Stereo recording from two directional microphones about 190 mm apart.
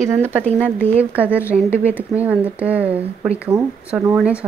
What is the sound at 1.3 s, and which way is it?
Speech, 10° left (ahead or behind).